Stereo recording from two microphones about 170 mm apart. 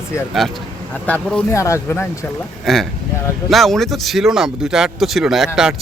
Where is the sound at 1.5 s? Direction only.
15° left (ahead or behind).